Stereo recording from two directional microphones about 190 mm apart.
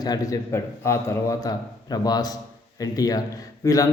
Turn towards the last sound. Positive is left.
turn(degrees=20)  # may be behind; listen again after turning